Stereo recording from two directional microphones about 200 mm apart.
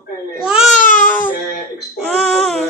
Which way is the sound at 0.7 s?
40° left (ahead or behind).